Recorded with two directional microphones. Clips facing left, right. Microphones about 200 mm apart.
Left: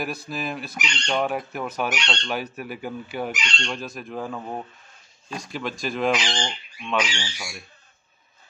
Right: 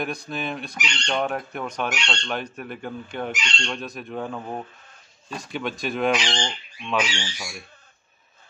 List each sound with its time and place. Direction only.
0.0 s speech: 5° left (ahead or behind)